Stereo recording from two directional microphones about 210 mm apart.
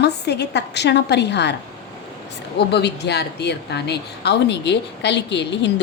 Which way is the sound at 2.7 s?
55° left (ahead or behind).